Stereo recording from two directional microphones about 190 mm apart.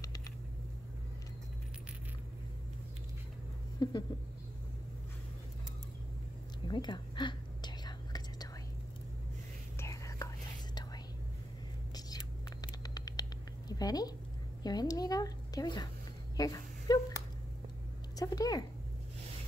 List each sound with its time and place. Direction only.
3.8 s a sound: 20° left (ahead or behind)
6.7 s whispering: 25° left (ahead or behind)
9.8 s whispering: 15° left (ahead or behind)
12.6 s rodents: 20° left (ahead or behind)
14.6 s a woman's voice: 20° left (ahead or behind)
16.3 s a sound: 20° left (ahead or behind)
18.1 s speech: 20° left (ahead or behind)